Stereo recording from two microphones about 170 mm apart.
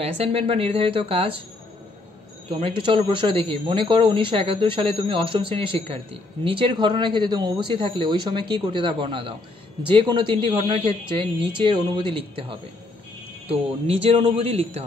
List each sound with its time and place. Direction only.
0.0 s speech: 35° right (ahead or behind)
2.5 s speech: 30° right (ahead or behind)